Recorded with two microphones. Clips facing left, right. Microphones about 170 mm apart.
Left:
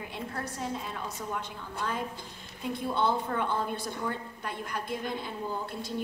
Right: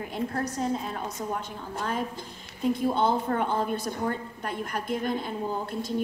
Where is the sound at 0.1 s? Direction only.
45° right (ahead or behind).